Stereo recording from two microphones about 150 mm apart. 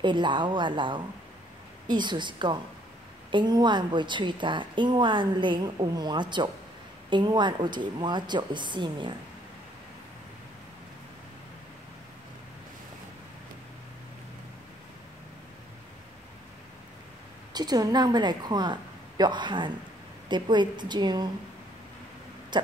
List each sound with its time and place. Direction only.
0.0 s a woman's voice: 30° right (ahead or behind)
17.6 s a woman's voice: 25° right (ahead or behind)
22.5 s a sound: 30° right (ahead or behind)